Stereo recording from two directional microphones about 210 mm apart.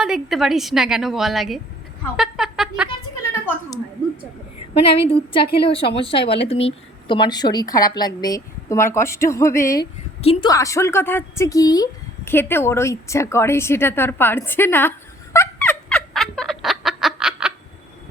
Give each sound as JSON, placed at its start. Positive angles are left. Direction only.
{"t": 0.0, "sound": "a woman's voice", "side_deg": 0}
{"t": 2.1, "sound": "a sound", "side_deg": 0}
{"t": 4.9, "sound": "speech", "side_deg": 25}
{"t": 10.2, "sound": "a woman's voice", "side_deg": 30}
{"t": 10.5, "sound": "a woman's voice", "side_deg": 15}